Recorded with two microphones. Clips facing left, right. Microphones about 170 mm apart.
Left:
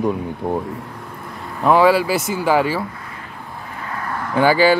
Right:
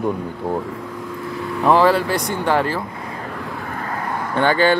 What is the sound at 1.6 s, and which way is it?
Speech, 5° left (ahead or behind).